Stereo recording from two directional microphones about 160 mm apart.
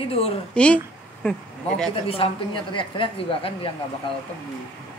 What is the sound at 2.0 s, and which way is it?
A woman's voice, 35° left (ahead or behind).